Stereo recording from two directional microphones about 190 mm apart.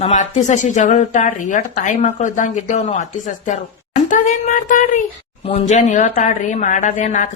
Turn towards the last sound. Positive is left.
turn(degrees=40)  # may be behind; listen again after turning